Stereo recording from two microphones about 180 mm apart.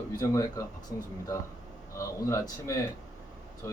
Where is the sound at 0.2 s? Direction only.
20° left (ahead or behind).